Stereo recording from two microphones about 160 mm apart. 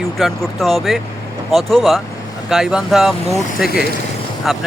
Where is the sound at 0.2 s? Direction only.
Centre (ahead or behind).